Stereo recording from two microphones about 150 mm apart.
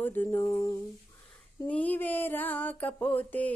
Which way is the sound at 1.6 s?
10° left (ahead or behind).